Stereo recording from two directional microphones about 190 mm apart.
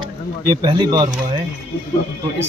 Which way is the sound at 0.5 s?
20° right (ahead or behind).